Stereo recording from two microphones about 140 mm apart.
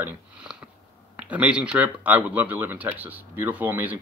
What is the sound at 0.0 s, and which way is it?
Speech, 5° right (ahead or behind).